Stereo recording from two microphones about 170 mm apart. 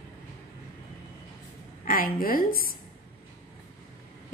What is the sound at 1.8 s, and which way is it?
Speech, 55° left (ahead or behind).